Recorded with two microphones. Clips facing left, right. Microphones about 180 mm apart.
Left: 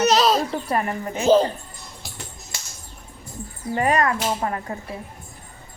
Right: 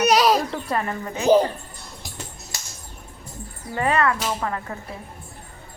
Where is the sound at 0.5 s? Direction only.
15° left (ahead or behind).